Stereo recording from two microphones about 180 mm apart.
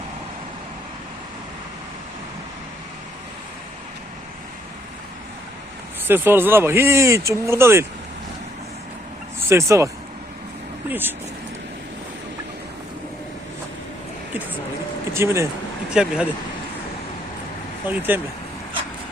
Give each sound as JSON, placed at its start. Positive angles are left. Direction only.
{"t": 6.1, "sound": "speech", "side_deg": -10}
{"t": 9.5, "sound": "speech", "side_deg": -15}
{"t": 15.1, "sound": "speech", "side_deg": -15}
{"t": 17.8, "sound": "speech", "side_deg": -10}